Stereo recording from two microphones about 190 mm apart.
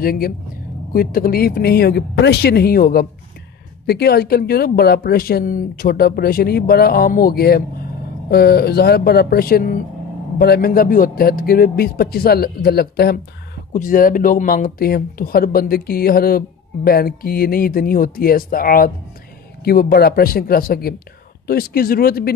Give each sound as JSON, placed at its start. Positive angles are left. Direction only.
{"t": 0.0, "sound": "speech", "side_deg": 50}